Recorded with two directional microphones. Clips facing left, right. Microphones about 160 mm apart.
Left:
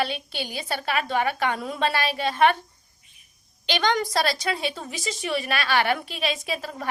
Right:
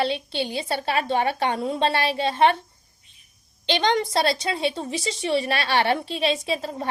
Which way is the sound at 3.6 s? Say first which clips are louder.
Right 2 dB; 30° right (ahead or behind).